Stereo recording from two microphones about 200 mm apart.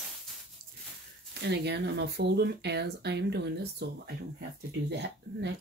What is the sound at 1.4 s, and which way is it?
Speech, 55° right (ahead or behind).